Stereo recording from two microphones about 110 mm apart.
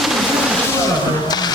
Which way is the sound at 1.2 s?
35° left (ahead or behind).